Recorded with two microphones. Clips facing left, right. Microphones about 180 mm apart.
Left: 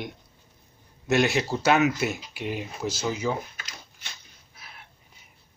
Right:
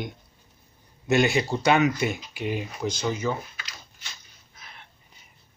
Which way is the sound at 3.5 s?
45° left (ahead or behind).